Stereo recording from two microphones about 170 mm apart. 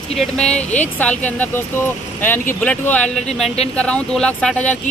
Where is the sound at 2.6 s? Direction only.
10° left (ahead or behind).